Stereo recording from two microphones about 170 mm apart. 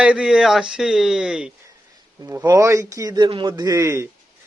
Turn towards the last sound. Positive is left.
turn(degrees=-15)  # may be behind; listen again after turning